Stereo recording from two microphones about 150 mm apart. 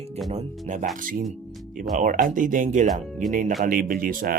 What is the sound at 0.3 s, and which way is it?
Speech, 55° right (ahead or behind).